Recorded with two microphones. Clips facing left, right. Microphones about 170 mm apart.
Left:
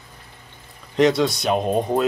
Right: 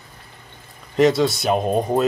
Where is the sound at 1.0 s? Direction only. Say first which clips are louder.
Right 1 dB; centre (ahead or behind).